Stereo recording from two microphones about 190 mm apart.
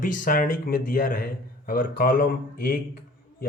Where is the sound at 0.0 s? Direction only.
45° left (ahead or behind).